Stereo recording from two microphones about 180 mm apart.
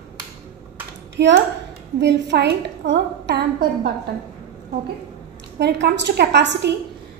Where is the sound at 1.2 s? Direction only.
75° right (ahead or behind).